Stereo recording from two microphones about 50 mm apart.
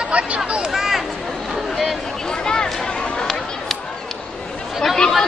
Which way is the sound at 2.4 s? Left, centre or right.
Centre.